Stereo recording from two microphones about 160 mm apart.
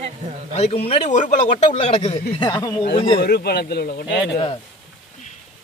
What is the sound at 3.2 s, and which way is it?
Speech, 90° left.